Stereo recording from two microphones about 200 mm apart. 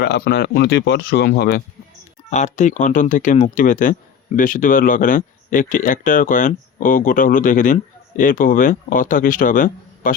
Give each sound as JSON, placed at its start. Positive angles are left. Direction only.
{"t": 0.0, "sound": "speech", "side_deg": 55}
{"t": 2.3, "sound": "speech", "side_deg": 35}